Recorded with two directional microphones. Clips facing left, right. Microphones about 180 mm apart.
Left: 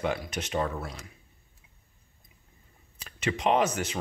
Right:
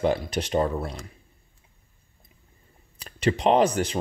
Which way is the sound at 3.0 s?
35° right (ahead or behind).